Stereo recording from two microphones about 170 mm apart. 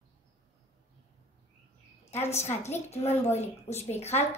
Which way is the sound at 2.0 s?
40° left (ahead or behind).